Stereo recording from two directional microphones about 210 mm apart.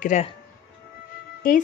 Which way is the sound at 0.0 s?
35° left (ahead or behind).